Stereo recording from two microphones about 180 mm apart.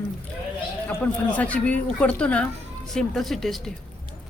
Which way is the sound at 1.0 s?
10° left (ahead or behind).